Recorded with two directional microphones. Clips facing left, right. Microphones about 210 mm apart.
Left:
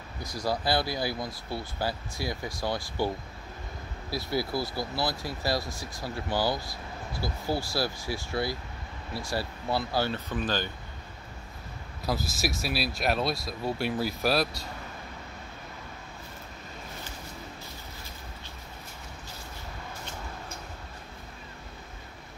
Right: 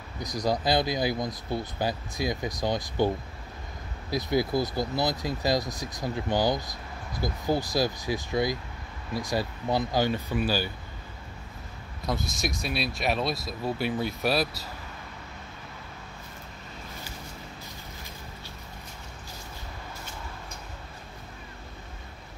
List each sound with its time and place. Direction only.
0.2 s speech: 20° right (ahead or behind)
4.1 s speech: 20° right (ahead or behind)
12.1 s speech: 5° left (ahead or behind)